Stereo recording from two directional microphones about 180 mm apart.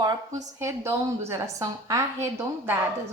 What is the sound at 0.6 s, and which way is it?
A woman's voice, 15° right (ahead or behind).